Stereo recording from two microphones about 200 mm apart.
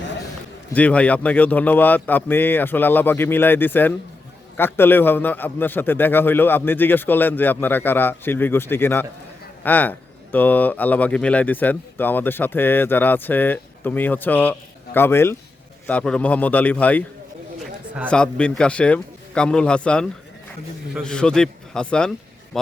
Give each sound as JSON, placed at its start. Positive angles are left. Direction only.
{"t": 0.7, "sound": "a man's voice", "side_deg": 5}
{"t": 17.6, "sound": "a sound", "side_deg": -5}
{"t": 18.1, "sound": "a man's voice", "side_deg": 5}